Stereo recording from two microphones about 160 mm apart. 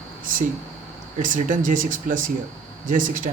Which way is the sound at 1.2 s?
55° right (ahead or behind).